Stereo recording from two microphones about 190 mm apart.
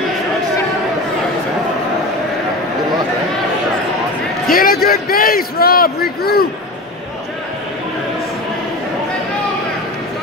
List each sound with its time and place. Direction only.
4.5 s a man's voice: 50° left (ahead or behind)